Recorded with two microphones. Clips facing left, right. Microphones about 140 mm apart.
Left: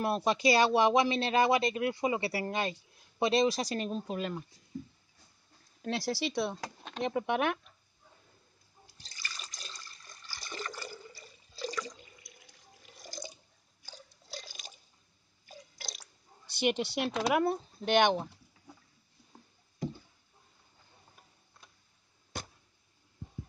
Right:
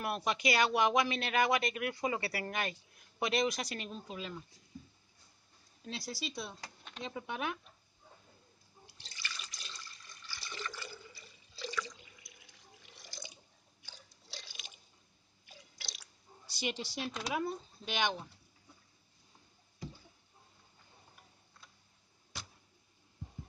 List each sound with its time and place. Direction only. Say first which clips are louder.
0.0 s speech: left 6 dB; 35° left (ahead or behind)
4.2 s speech: left 7 dB; 55° left (ahead or behind)
5.8 s speech: left 10 dB; 85° left
8.8 s liquid: even; 40° left (ahead or behind)
15.4 s drip: left 6 dB; 40° left (ahead or behind); by 18.8 s 65° left (ahead or behind)
19.3 s a sound: left 9 dB; 55° left (ahead or behind)
22.3 s a sound: left 8 dB; 50° left (ahead or behind)